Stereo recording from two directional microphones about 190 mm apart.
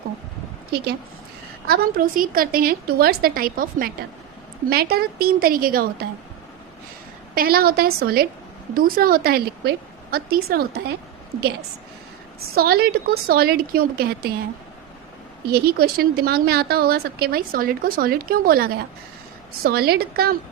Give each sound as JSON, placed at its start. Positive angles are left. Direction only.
{"t": 1.6, "sound": "a woman's voice", "side_deg": -50}
{"t": 7.3, "sound": "a woman's voice", "side_deg": -50}
{"t": 12.4, "sound": "a woman's voice", "side_deg": -55}
{"t": 15.5, "sound": "a woman's voice", "side_deg": -55}